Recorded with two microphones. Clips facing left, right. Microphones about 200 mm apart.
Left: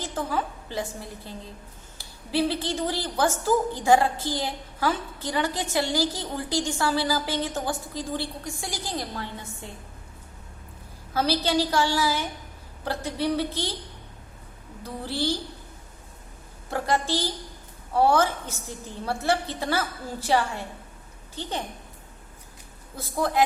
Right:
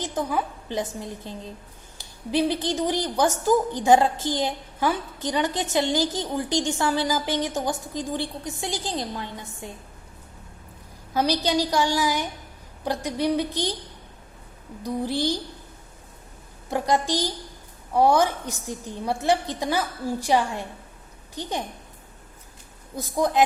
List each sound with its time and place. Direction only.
0.0 s a woman's voice: 15° right (ahead or behind)
11.1 s a woman's voice: 15° right (ahead or behind)
14.8 s a woman's voice: 15° right (ahead or behind)
16.6 s a woman's voice: 15° right (ahead or behind)
23.0 s a woman's voice: 15° right (ahead or behind)